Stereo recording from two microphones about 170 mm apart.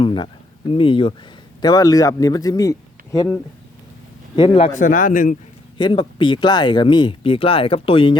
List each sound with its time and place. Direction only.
0.0 s speech: 30° left (ahead or behind)
4.4 s speech: 30° left (ahead or behind)
4.7 s a man's voice: 50° left (ahead or behind)
5.7 s speech: 30° left (ahead or behind)